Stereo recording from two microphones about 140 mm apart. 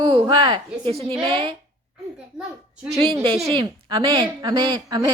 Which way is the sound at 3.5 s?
35° right (ahead or behind).